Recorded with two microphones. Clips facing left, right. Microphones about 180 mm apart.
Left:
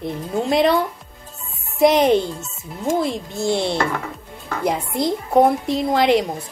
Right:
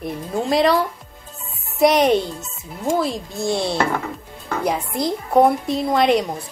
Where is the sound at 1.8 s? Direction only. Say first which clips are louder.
Left 1 dB; 20° left (ahead or behind).